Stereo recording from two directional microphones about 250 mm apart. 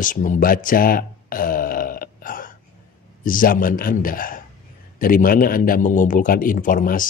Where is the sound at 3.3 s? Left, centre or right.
Left.